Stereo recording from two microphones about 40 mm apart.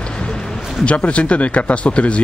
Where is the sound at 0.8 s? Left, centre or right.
Left.